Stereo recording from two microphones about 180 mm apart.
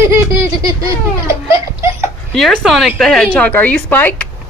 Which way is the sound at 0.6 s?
20° right (ahead or behind).